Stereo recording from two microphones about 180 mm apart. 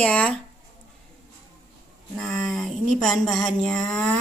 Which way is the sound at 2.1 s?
Centre (ahead or behind).